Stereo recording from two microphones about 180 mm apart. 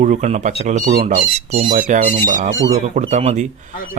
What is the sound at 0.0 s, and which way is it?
Speech, 40° right (ahead or behind).